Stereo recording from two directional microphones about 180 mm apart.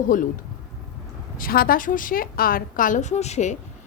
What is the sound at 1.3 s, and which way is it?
Speech, 50° left (ahead or behind).